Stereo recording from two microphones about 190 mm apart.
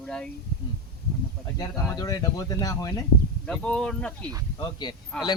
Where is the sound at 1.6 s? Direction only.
20° left (ahead or behind).